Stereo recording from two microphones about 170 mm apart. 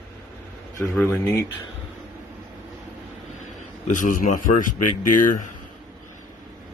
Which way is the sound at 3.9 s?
50° left (ahead or behind).